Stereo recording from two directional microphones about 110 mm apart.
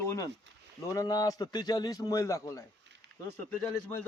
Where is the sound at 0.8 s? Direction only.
30° left (ahead or behind).